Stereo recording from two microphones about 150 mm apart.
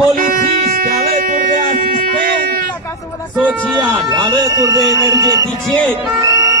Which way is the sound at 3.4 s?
10° right (ahead or behind).